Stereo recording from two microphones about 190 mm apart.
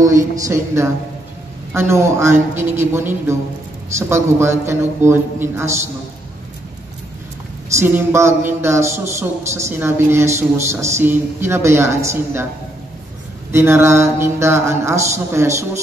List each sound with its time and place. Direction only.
0.0 s speech: 15° right (ahead or behind)
7.7 s speech: 15° right (ahead or behind)
13.5 s speech: 15° right (ahead or behind)